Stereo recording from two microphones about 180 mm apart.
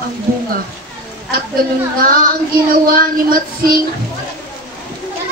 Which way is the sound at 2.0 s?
55° right (ahead or behind).